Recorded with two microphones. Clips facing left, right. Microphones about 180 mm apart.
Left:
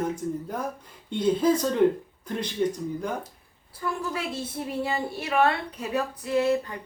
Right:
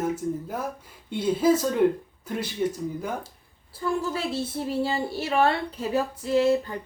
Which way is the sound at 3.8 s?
30° right (ahead or behind).